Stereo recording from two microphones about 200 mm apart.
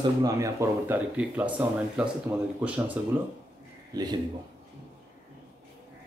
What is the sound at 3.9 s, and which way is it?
Speech, 20° right (ahead or behind).